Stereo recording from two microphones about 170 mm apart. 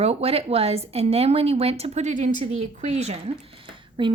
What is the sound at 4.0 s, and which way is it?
Speech, 30° right (ahead or behind).